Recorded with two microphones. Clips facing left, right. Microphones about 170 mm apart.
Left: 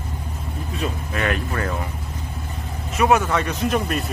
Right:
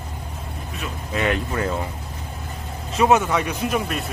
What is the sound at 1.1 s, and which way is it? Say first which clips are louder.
Speech: right 4 dB; 20° right (ahead or behind).